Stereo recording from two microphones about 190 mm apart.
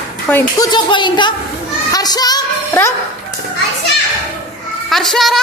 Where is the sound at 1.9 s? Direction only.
20° left (ahead or behind).